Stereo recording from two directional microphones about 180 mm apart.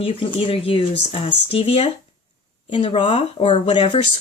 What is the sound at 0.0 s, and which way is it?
Speech, 30° left (ahead or behind).